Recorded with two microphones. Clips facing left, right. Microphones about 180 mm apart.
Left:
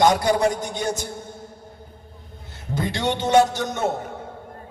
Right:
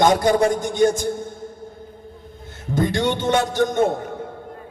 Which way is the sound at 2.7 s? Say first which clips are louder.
Right 4 dB; 50° right (ahead or behind).